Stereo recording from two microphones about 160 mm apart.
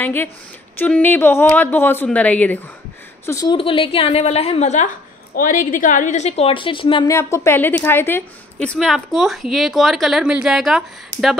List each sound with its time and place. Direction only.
0.0 s speech: 15° left (ahead or behind)
3.3 s a woman's voice: 20° left (ahead or behind)
3.5 s a woman's voice: 35° left (ahead or behind)
7.1 s a woman's voice: 15° left (ahead or behind); by 10.8 s 5° right (ahead or behind)